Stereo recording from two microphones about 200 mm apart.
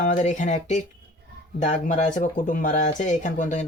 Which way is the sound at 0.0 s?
40° left (ahead or behind).